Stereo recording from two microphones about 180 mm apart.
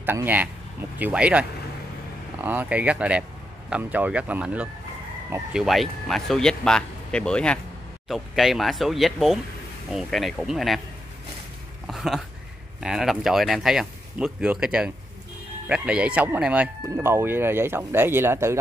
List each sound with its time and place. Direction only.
0.0 s speech: 10° right (ahead or behind)
2.4 s speech: 10° right (ahead or behind)
11.9 s a sound: centre (ahead or behind)
12.8 s speech: centre (ahead or behind)